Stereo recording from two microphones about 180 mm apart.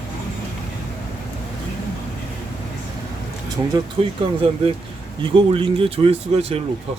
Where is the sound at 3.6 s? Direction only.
20° right (ahead or behind).